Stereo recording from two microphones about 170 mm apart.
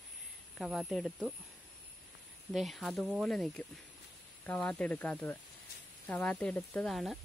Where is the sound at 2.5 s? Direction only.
Centre (ahead or behind).